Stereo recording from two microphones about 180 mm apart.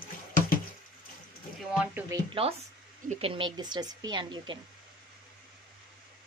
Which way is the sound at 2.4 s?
35° right (ahead or behind).